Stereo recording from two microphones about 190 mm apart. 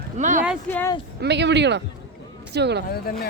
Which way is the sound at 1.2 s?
65° right (ahead or behind).